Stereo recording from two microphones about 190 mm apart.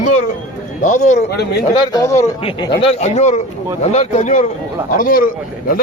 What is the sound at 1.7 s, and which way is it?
Speech, 20° left (ahead or behind).